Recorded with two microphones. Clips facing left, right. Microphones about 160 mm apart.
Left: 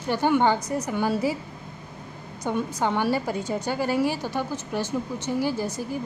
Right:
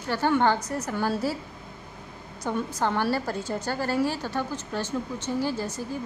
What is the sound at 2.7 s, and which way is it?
A woman's voice, 15° left (ahead or behind).